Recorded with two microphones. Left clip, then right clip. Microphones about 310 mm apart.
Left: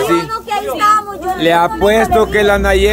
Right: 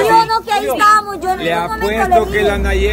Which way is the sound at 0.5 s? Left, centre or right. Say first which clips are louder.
Right 1 dB; right.